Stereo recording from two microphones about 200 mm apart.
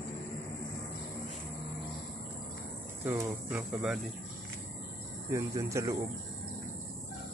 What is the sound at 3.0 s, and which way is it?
Speech, 10° right (ahead or behind).